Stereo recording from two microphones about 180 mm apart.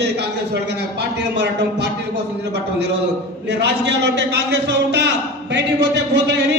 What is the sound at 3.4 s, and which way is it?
A man's voice, 70° right (ahead or behind).